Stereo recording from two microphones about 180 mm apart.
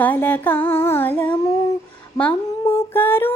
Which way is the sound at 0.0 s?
10° left (ahead or behind).